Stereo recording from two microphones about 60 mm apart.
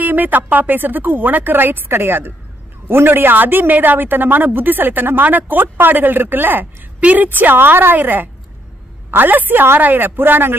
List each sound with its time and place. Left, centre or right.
0.0 s speech: right